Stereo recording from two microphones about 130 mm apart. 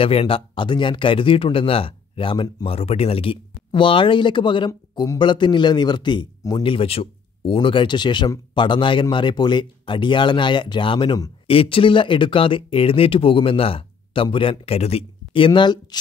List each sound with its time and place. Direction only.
0.0 s speech: 45° left (ahead or behind)
11.4 s speech: 45° left (ahead or behind)